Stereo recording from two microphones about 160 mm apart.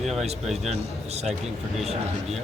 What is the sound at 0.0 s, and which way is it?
Speech, centre (ahead or behind).